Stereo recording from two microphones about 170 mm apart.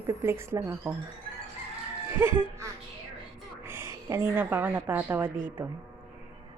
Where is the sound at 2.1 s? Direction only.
15° right (ahead or behind).